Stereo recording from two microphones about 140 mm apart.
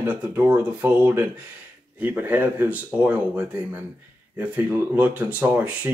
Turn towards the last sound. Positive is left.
turn(degrees=-10)  # may be behind; listen again after turning